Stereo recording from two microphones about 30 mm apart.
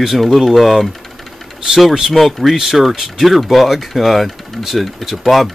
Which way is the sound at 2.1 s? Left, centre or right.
Centre.